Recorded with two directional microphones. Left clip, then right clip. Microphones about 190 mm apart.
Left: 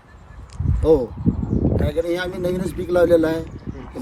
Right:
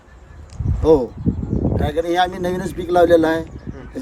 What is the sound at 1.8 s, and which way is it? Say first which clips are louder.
Speech: right 9 dB; 40° right (ahead or behind).